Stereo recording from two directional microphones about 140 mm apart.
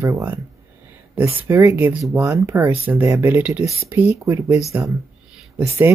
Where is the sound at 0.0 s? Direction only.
20° right (ahead or behind).